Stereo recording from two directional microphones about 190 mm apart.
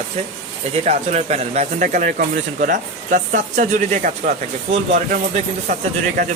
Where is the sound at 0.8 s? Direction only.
35° right (ahead or behind).